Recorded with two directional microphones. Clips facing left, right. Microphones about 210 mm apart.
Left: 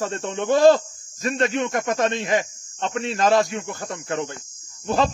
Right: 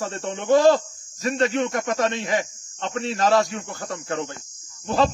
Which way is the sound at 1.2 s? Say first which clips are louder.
Right 1 dB; 20° left (ahead or behind).